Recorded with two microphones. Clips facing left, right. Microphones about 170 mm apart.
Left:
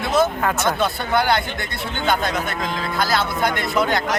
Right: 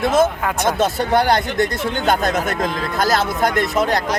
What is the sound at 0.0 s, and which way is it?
Speech, 45° right (ahead or behind).